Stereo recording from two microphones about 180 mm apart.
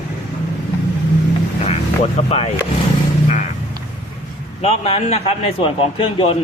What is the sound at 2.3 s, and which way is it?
Speech, 35° left (ahead or behind).